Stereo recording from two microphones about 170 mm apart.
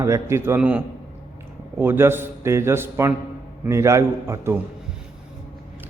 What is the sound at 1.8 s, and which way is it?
A man's voice, 15° right (ahead or behind).